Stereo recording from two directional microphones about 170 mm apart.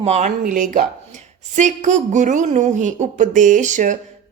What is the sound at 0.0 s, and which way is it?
Speech, 40° right (ahead or behind).